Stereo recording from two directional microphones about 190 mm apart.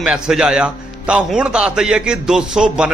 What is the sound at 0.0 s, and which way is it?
Speech, 5° right (ahead or behind).